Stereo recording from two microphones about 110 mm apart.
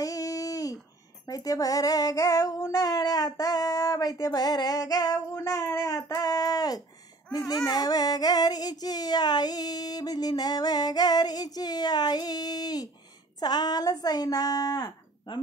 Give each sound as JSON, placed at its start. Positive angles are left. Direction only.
{"t": 0.0, "sound": "a sound", "side_deg": 30}
{"t": 1.2, "sound": "female singing", "side_deg": 35}
{"t": 7.3, "sound": "child singing", "side_deg": 35}
{"t": 13.4, "sound": "speech", "side_deg": 40}